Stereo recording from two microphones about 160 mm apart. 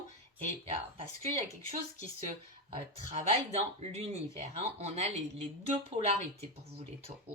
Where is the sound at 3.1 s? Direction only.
40° right (ahead or behind).